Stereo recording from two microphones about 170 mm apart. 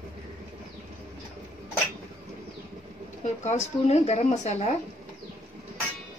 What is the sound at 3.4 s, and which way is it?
Speech, 40° left (ahead or behind).